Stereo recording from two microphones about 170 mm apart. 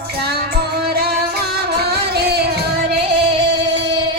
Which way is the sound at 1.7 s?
70° right (ahead or behind).